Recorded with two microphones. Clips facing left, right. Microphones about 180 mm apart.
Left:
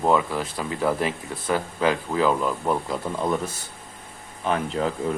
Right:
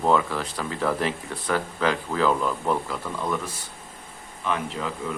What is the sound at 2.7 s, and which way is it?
Speech, 25° left (ahead or behind).